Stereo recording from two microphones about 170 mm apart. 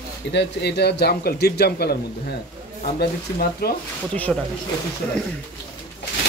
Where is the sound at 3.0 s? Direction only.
65° left (ahead or behind).